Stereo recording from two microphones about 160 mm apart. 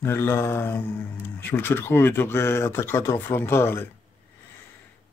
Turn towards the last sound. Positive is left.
turn(degrees=15)  # may be behind; listen again after turning